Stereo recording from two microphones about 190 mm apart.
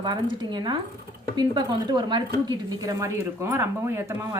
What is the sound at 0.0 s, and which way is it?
A woman's voice, 25° right (ahead or behind).